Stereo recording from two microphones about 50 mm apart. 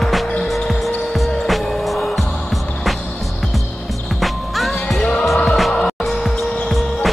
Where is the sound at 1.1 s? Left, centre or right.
Centre.